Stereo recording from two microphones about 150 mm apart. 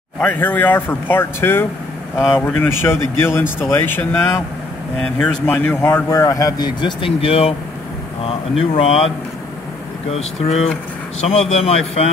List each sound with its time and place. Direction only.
0.2 s speech: 10° left (ahead or behind); by 9.1 s 40° left (ahead or behind)
11.1 s speech: 45° left (ahead or behind)